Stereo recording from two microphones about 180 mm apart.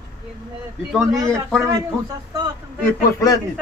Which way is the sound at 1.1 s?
15° right (ahead or behind).